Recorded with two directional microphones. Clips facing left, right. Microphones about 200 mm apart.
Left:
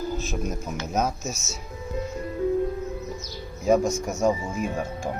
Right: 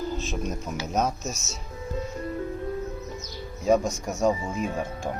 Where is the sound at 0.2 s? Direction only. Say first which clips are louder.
Left 1 dB; 5° left (ahead or behind).